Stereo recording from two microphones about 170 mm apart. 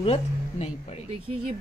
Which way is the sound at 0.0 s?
35° left (ahead or behind).